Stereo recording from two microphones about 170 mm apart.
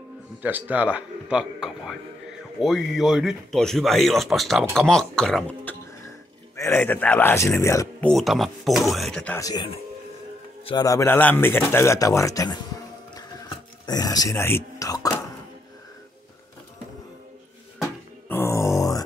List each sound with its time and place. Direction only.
0.4 s a man's voice: 10° right (ahead or behind); by 5.8 s 5° left (ahead or behind)
6.5 s a man's voice: 15° left (ahead or behind)
8.1 s speech: centre (ahead or behind)
9.4 s a man's voice: 25° left (ahead or behind)
13.8 s speech: 20° left (ahead or behind)
18.3 s music: 15° left (ahead or behind)